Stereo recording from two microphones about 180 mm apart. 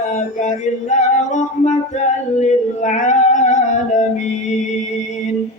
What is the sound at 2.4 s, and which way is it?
Music, 40° left (ahead or behind).